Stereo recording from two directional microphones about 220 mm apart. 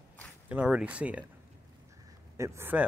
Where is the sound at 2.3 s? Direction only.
10° right (ahead or behind).